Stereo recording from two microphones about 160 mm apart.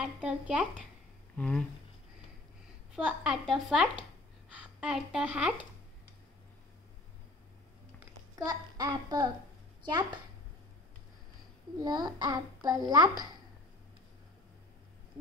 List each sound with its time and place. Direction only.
0.0 s speech: 10° right (ahead or behind)
1.3 s speech: 10° left (ahead or behind)
2.9 s speech: 5° right (ahead or behind)
8.5 s a child's voice: 25° right (ahead or behind)
11.8 s a child's voice: 25° right (ahead or behind)